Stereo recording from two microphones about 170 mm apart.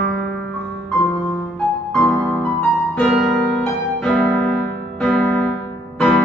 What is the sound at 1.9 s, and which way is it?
Music, centre (ahead or behind).